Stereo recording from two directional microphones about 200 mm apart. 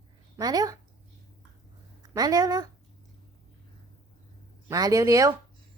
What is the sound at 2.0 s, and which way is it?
Speech, 20° right (ahead or behind).